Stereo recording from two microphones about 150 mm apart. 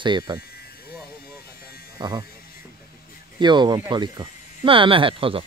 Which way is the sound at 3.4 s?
30° right (ahead or behind).